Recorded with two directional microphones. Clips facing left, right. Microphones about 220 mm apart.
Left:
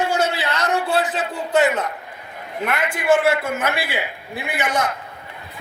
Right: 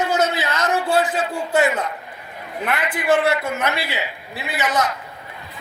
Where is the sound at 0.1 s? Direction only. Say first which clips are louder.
Right 1 dB; 30° left (ahead or behind).